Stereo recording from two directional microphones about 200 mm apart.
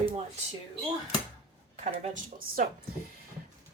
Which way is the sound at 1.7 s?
35° right (ahead or behind).